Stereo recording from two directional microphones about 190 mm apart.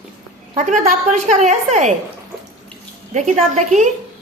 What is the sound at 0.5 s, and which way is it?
A woman's voice, 45° right (ahead or behind).